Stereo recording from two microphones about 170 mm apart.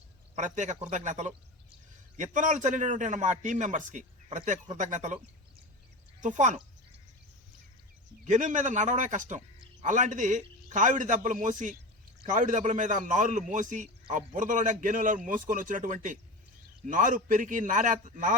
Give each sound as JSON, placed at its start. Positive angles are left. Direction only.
{"t": 0.3, "sound": "a man's voice", "side_deg": -45}
{"t": 8.2, "sound": "a man's voice", "side_deg": -45}